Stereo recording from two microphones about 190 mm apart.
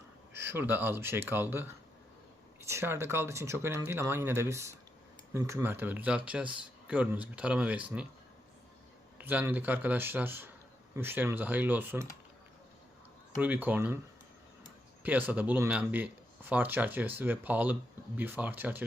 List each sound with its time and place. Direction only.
0.3 s speech: 10° right (ahead or behind)
9.1 s speech: 10° right (ahead or behind)
13.4 s speech: 10° right (ahead or behind)
15.3 s speech: 10° right (ahead or behind)